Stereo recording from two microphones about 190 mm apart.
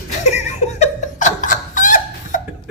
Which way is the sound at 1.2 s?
40° left (ahead or behind).